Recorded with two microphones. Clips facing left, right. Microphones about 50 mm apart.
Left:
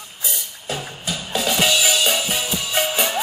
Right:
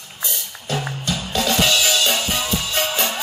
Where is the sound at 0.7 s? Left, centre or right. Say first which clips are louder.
Right 3 dB; centre.